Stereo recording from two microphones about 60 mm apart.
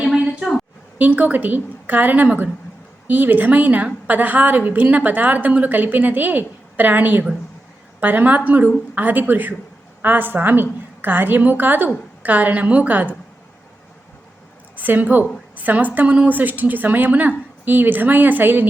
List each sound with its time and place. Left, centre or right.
0.0 s a sound: centre
0.9 s a woman's voice: right
14.8 s a woman's voice: right